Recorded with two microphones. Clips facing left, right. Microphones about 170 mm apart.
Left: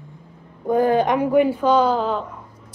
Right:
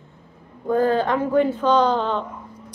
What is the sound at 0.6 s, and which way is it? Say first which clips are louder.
A woman's voice: left 2 dB; 15° left (ahead or behind).